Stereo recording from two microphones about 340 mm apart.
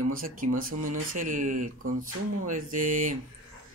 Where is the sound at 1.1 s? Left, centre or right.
Right.